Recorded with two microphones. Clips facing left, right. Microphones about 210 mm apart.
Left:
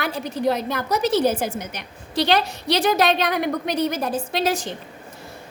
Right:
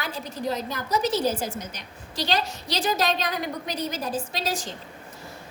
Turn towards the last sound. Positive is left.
turn(degrees=65)  # may be behind; listen again after turning